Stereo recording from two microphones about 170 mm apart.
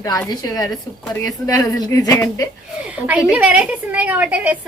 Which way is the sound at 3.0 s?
5° right (ahead or behind).